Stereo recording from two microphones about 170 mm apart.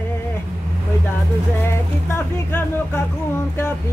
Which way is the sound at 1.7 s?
15° left (ahead or behind).